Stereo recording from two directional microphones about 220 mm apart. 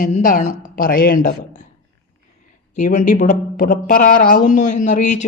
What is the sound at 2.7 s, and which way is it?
Speech, 35° left (ahead or behind).